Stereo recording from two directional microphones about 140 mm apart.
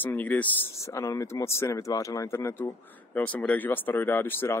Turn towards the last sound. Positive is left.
turn(degrees=15)  # may be behind; listen again after turning